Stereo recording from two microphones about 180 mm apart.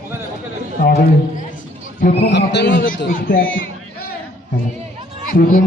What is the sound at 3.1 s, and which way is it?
Speech, 50° left (ahead or behind).